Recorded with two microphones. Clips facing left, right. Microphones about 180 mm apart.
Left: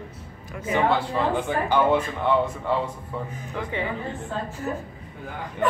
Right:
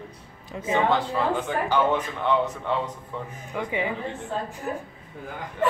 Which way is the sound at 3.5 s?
15° right (ahead or behind).